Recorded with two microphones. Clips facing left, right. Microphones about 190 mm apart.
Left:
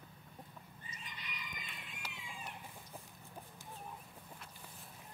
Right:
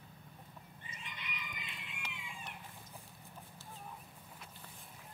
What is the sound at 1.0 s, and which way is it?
Chicken, 35° left (ahead or behind).